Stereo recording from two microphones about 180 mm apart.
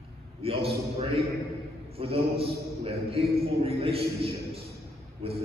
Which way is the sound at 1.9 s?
35° right (ahead or behind).